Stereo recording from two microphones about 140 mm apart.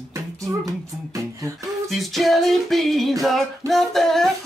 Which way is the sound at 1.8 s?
Centre (ahead or behind).